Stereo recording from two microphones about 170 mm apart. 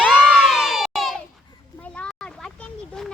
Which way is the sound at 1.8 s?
5° left (ahead or behind).